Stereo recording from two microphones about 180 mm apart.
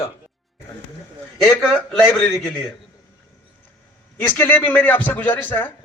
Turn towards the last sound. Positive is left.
turn(degrees=10)  # may be behind; listen again after turning